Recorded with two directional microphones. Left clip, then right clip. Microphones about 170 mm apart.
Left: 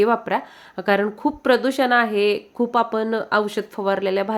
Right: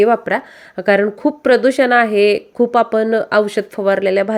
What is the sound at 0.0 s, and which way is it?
Speech, 20° right (ahead or behind).